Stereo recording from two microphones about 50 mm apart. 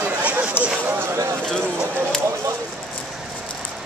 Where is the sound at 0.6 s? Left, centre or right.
Left.